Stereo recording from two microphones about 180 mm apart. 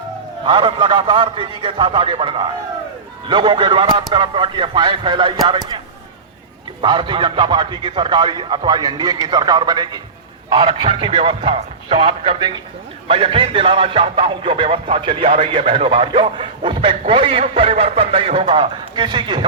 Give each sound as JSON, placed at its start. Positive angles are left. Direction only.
{"t": 0.4, "sound": "speech", "side_deg": -30}
{"t": 6.8, "sound": "speech", "side_deg": -25}